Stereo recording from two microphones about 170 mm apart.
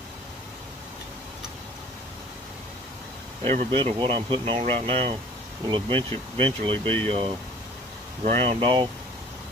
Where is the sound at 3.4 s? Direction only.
40° right (ahead or behind).